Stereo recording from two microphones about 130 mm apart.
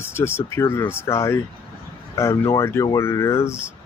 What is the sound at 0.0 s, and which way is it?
Speech, 20° left (ahead or behind).